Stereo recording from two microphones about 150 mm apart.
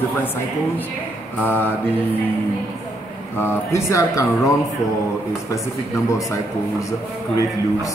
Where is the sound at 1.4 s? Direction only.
15° left (ahead or behind).